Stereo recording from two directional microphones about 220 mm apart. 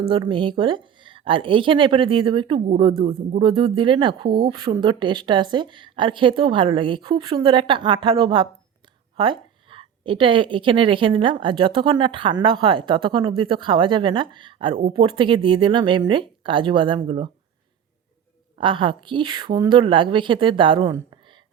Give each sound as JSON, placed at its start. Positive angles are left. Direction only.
{"t": 0.1, "sound": "a woman's voice", "side_deg": -20}
{"t": 18.5, "sound": "a woman's voice", "side_deg": -25}